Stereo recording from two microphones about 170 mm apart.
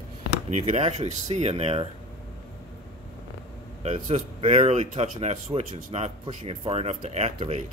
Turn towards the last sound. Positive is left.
turn(degrees=-40)  # may be behind; listen again after turning